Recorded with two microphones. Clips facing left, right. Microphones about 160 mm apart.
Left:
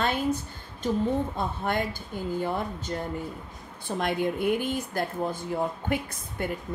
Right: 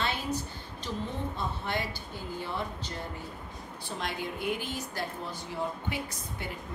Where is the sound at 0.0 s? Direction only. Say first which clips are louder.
Left 6 dB; 50° left (ahead or behind).